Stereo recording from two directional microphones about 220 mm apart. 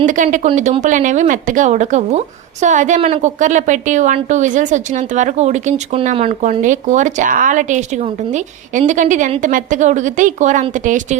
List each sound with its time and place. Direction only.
0.0 s speech: 35° right (ahead or behind)